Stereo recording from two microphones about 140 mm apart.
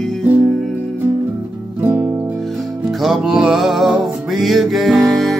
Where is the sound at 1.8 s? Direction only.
15° right (ahead or behind).